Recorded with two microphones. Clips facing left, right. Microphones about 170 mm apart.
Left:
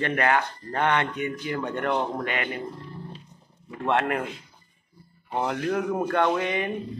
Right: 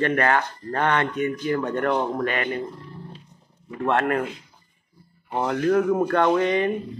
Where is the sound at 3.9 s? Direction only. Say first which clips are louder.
Right 2 dB; 15° left (ahead or behind).